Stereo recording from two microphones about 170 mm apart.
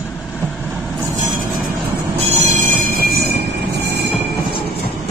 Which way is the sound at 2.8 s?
60° right (ahead or behind).